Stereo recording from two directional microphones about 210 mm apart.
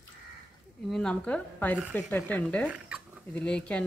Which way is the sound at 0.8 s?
5° left (ahead or behind).